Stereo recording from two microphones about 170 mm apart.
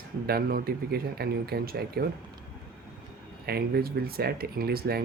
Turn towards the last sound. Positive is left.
turn(degrees=-65)  # may be behind; listen again after turning